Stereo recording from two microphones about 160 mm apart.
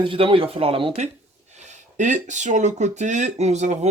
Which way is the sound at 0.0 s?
30° right (ahead or behind).